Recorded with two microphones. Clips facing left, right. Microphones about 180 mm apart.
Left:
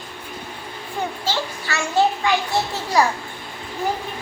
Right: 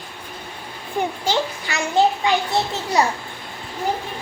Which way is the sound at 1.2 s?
15° right (ahead or behind).